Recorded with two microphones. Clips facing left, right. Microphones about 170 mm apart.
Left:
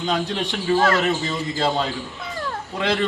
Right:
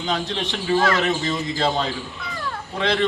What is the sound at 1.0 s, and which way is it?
Speech, 10° left (ahead or behind).